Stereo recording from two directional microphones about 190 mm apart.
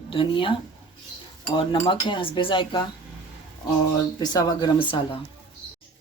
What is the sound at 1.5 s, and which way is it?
Speech, 25° left (ahead or behind).